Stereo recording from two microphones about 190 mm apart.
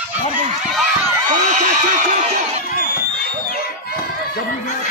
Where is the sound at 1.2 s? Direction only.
40° right (ahead or behind).